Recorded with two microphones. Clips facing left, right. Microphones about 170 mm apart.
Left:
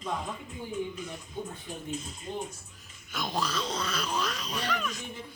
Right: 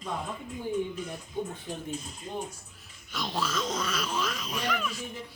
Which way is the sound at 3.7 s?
5° right (ahead or behind).